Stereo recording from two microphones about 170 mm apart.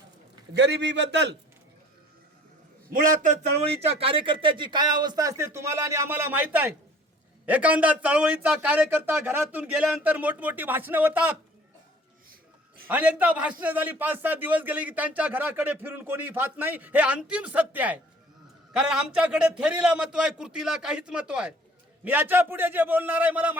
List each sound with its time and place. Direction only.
0.5 s a man's voice: 90° right
2.9 s a man's voice: 50° right (ahead or behind); by 11.3 s 10° right (ahead or behind)
12.9 s a man's voice: 10° right (ahead or behind)